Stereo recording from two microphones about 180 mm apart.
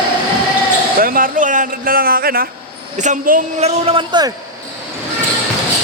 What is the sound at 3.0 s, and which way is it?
Speech, 45° right (ahead or behind).